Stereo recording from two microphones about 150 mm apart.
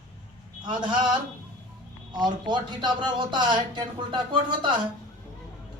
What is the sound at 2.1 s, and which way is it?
Speech, 30° right (ahead or behind).